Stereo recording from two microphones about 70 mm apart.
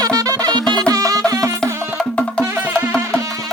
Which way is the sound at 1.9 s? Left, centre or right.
Centre.